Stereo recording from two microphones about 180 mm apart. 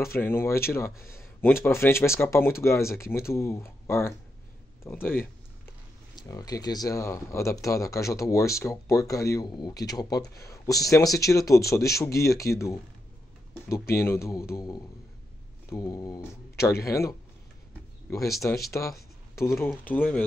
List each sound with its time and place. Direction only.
0.0 s speech: 15° left (ahead or behind)
13.9 s speech: 15° left (ahead or behind)
18.7 s speech: 15° left (ahead or behind)